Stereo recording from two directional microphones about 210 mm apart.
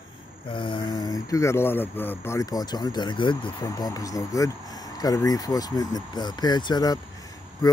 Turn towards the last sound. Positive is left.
turn(degrees=15)  # may be behind; listen again after turning